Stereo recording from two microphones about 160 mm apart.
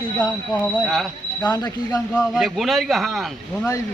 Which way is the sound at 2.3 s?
Centre (ahead or behind).